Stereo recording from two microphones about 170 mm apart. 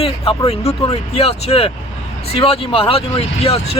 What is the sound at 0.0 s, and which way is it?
Speech, 35° left (ahead or behind).